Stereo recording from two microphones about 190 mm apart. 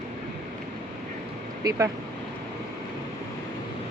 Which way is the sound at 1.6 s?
15° right (ahead or behind).